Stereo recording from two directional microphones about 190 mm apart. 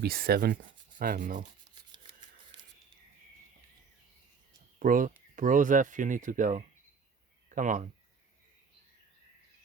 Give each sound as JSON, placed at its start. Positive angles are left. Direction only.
{"t": 0.0, "sound": "speech", "side_deg": -55}
{"t": 4.8, "sound": "speech", "side_deg": -45}